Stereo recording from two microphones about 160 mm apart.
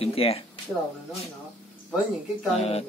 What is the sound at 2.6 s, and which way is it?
Speech, 40° left (ahead or behind).